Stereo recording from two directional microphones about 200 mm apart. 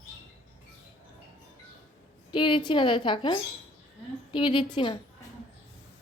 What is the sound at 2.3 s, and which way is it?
A woman's voice, 25° left (ahead or behind).